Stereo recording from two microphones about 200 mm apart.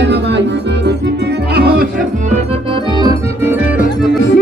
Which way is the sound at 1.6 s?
50° right (ahead or behind).